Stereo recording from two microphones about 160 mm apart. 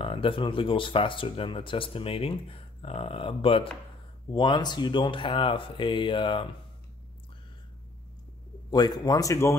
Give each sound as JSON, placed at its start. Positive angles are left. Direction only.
{"t": 0.0, "sound": "speech", "side_deg": 35}
{"t": 8.6, "sound": "speech", "side_deg": 25}